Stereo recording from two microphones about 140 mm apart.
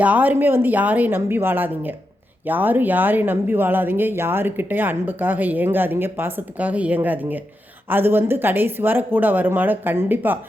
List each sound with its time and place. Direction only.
0.0 s a woman's voice: 10° right (ahead or behind)